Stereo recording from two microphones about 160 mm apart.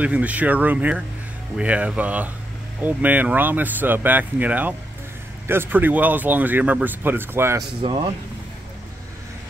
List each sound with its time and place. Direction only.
0.0 s speech: 10° right (ahead or behind)
7.8 s speech: 35° right (ahead or behind)